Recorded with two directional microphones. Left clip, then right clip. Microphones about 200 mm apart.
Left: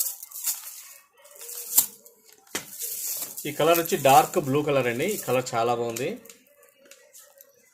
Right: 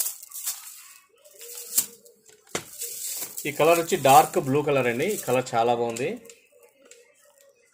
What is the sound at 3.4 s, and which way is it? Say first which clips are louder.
A man's voice: right 2 dB; 5° left (ahead or behind).